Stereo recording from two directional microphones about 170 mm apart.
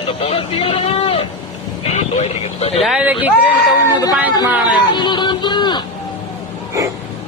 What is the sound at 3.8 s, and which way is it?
Speech, 20° left (ahead or behind).